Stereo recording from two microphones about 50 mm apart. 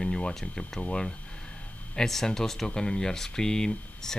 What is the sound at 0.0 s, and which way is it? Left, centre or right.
Speech, centre.